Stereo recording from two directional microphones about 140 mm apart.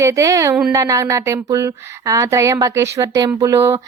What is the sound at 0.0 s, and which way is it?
Speech, 20° right (ahead or behind).